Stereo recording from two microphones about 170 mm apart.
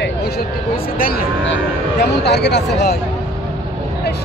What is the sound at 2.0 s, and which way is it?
Speech, 80° left.